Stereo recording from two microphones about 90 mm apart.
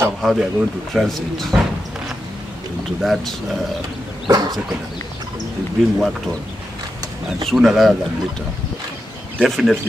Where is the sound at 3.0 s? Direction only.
Centre (ahead or behind).